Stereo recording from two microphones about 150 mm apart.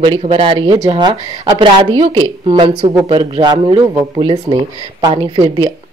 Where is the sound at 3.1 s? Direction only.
30° right (ahead or behind).